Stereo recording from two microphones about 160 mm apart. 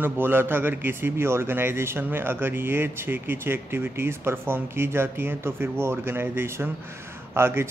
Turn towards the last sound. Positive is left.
turn(degrees=-15)  # may be behind; listen again after turning